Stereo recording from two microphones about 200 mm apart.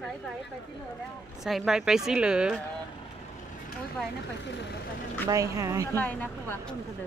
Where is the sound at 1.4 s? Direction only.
Centre (ahead or behind).